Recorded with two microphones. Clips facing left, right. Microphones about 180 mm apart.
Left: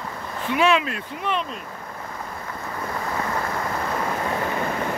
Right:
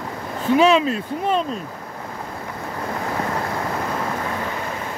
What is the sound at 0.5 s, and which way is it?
Speech, 30° right (ahead or behind).